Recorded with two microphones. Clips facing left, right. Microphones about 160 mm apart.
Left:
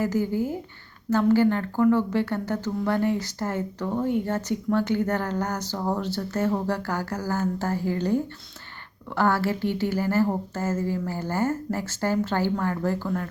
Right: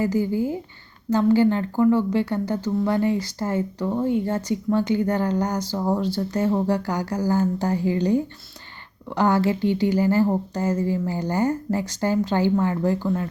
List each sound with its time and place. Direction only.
0.0 s speech: 10° right (ahead or behind)